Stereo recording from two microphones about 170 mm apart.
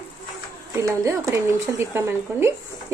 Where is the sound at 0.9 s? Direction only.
20° right (ahead or behind).